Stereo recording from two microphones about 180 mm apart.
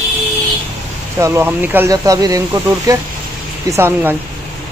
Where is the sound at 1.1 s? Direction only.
15° right (ahead or behind).